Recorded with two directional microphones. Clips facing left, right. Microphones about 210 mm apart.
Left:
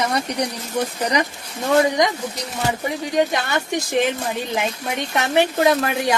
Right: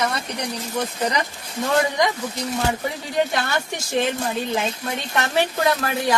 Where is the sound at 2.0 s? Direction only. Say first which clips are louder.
Left 1 dB; 20° left (ahead or behind).